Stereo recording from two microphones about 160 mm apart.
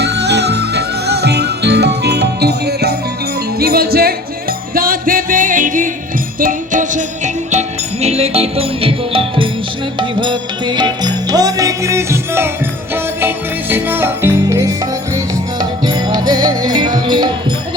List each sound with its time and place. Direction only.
0.0 s music: 90° right
3.6 s speech: 75° right (ahead or behind)
4.7 s music: 65° right (ahead or behind)
8.0 s music: 40° right (ahead or behind)